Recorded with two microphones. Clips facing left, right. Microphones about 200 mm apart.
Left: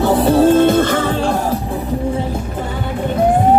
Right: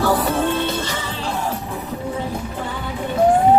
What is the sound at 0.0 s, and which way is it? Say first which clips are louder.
Music: left 6 dB; 25° left (ahead or behind).